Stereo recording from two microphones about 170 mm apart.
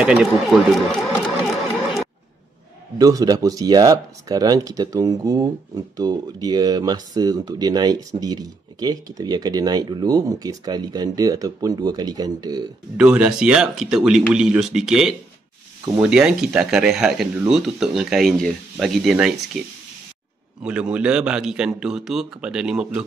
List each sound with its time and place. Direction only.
0.0 s a man's voice: 5° right (ahead or behind)
3.0 s speech: 20° right (ahead or behind)
12.9 s a man's voice: 10° right (ahead or behind)